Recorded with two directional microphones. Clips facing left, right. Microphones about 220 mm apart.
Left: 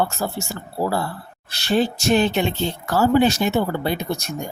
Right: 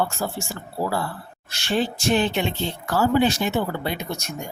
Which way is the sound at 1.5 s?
40° left (ahead or behind).